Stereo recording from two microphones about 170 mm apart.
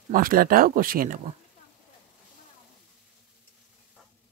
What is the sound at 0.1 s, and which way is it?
Speech, 60° right (ahead or behind).